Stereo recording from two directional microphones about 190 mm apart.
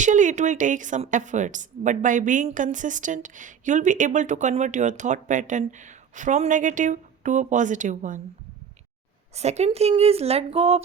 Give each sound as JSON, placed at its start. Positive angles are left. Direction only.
{"t": 0.0, "sound": "a woman's voice", "side_deg": -40}
{"t": 9.3, "sound": "a woman's voice", "side_deg": -35}